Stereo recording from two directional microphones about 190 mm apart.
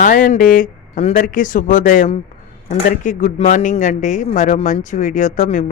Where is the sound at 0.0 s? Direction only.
45° left (ahead or behind).